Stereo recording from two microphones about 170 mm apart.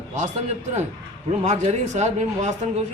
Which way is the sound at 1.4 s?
40° right (ahead or behind).